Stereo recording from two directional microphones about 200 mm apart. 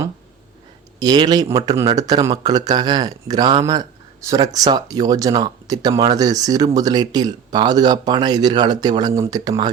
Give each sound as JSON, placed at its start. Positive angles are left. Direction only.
{"t": 0.9, "sound": "speech", "side_deg": -20}